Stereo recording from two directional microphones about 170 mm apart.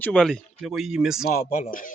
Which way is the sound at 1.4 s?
50° left (ahead or behind).